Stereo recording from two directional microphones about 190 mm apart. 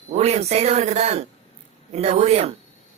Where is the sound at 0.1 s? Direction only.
35° right (ahead or behind).